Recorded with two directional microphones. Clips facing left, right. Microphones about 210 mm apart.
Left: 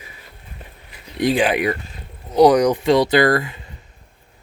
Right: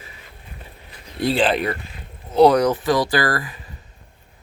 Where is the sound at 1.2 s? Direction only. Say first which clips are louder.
Left 2 dB; 15° left (ahead or behind).